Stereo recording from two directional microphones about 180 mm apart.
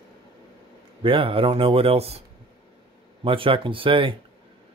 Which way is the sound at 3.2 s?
30° right (ahead or behind).